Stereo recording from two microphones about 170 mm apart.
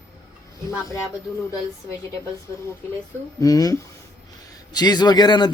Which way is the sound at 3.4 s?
20° left (ahead or behind).